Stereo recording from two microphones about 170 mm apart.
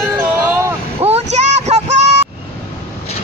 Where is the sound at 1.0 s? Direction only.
40° right (ahead or behind).